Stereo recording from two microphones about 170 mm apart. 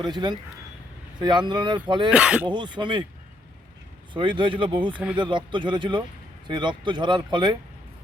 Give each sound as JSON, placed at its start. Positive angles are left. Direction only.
{"t": 0.0, "sound": "speech", "side_deg": -25}
{"t": 2.0, "sound": "speech", "side_deg": -5}
{"t": 2.5, "sound": "speech", "side_deg": -25}
{"t": 4.1, "sound": "speech", "side_deg": -30}
{"t": 4.9, "sound": "speech", "side_deg": -5}
{"t": 5.2, "sound": "speech", "side_deg": -30}